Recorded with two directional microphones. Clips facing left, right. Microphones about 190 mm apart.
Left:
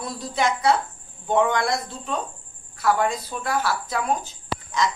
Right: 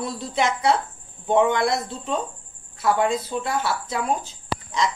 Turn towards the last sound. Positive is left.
turn(degrees=-25)  # may be behind; listen again after turning